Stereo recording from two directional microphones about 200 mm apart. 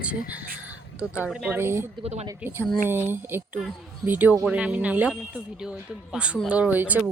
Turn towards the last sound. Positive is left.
turn(degrees=-5)  # may be behind; listen again after turning